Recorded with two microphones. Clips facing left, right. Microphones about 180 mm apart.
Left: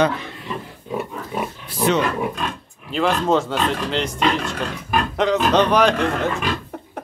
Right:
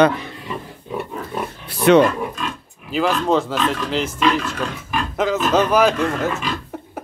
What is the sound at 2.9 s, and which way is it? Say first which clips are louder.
Speech: even; centre (ahead or behind).